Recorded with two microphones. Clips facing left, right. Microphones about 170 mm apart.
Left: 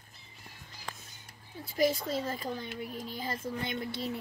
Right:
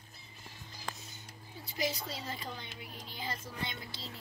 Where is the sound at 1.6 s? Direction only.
50° left (ahead or behind).